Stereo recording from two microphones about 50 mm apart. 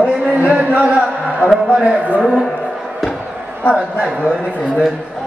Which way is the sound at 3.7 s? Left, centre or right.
Centre.